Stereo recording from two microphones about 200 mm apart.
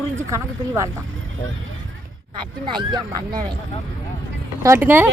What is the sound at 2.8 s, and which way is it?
Speech, 20° right (ahead or behind).